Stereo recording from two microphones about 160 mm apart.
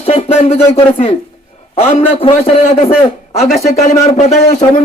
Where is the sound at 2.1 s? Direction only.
35° left (ahead or behind).